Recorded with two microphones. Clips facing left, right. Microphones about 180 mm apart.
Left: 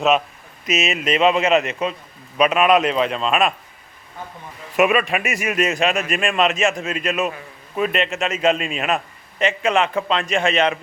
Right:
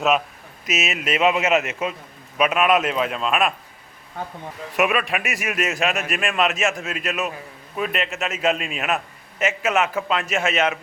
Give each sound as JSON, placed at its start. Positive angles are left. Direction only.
{"t": 0.6, "sound": "a man's voice", "side_deg": 0}
{"t": 4.8, "sound": "a man's voice", "side_deg": 0}